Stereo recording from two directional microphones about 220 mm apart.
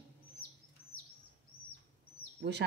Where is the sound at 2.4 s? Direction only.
50° right (ahead or behind).